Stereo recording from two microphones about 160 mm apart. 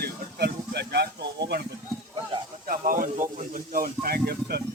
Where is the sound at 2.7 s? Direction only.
60° right (ahead or behind).